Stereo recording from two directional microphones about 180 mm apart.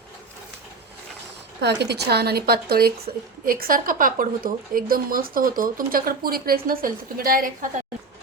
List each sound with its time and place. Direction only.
1.6 s a woman's voice: 70° right (ahead or behind); by 7.7 s 50° right (ahead or behind)